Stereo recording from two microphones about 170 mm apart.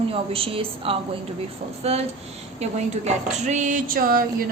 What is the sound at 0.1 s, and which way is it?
A woman's voice, 35° right (ahead or behind).